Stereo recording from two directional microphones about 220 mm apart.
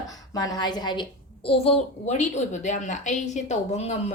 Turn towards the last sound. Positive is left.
turn(degrees=30)  # may be behind; listen again after turning